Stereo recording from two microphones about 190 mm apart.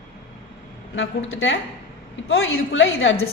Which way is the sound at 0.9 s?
90° left.